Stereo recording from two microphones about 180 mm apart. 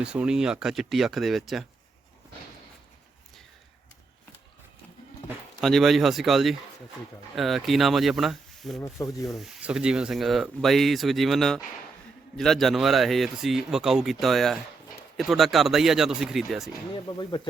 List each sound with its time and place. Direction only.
0.0 s speech: 5° right (ahead or behind)
5.5 s speech: centre (ahead or behind)
9.0 s speech: 15° left (ahead or behind)
9.4 s speech: 5° right (ahead or behind)
17.2 s speech: 25° left (ahead or behind)